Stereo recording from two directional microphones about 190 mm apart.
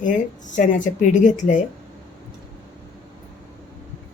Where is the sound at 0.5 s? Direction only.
40° left (ahead or behind).